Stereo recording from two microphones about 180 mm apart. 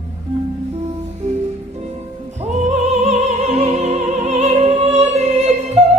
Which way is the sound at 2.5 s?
40° right (ahead or behind).